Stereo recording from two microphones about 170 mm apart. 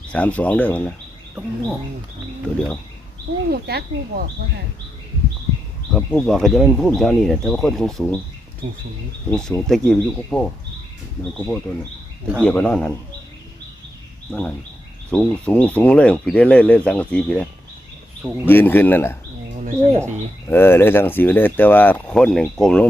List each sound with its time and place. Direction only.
0.1 s speech: 10° left (ahead or behind)
3.5 s speech: 70° right (ahead or behind)
5.9 s speech: 5° left (ahead or behind)
9.3 s speech: 5° left (ahead or behind)
14.3 s speech: 5° left (ahead or behind)
18.4 s speech: 10° left (ahead or behind)
19.5 s speech: 45° right (ahead or behind)
20.5 s speech: 15° left (ahead or behind)